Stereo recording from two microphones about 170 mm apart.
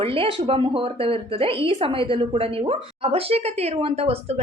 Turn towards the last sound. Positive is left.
turn(degrees=-35)  # may be behind; listen again after turning